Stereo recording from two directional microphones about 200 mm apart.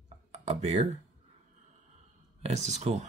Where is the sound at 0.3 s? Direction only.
35° right (ahead or behind).